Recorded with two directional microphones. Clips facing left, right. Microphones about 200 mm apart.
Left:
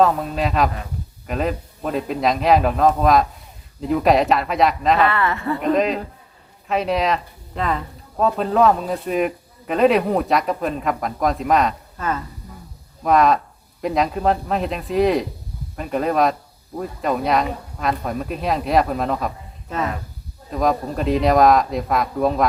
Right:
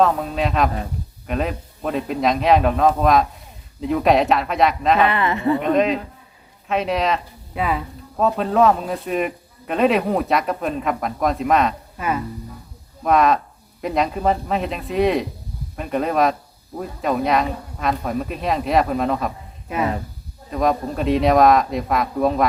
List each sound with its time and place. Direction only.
0.0 s speech: centre (ahead or behind)
4.9 s speech: 20° right (ahead or behind)
5.7 s speech: centre (ahead or behind)
11.9 s speech: 10° right (ahead or behind)
13.1 s speech: centre (ahead or behind)
19.6 s speech: 10° right (ahead or behind)
20.5 s speech: centre (ahead or behind)